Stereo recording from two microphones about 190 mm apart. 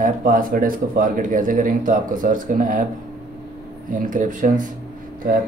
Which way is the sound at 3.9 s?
45° right (ahead or behind).